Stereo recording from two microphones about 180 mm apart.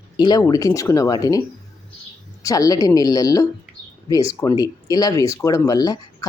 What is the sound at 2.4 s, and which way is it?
Speech, 20° left (ahead or behind).